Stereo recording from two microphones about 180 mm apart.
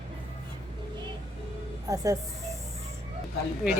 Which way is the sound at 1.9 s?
20° right (ahead or behind).